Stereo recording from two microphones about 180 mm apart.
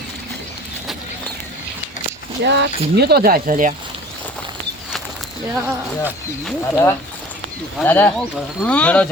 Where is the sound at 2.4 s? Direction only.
70° right (ahead or behind); by 3.7 s 50° right (ahead or behind).